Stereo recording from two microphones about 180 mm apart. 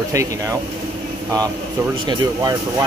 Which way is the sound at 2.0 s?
20° right (ahead or behind).